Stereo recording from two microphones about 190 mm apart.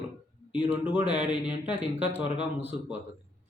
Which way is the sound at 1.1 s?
5° right (ahead or behind).